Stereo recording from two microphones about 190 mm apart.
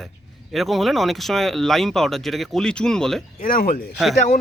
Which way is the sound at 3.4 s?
50° left (ahead or behind).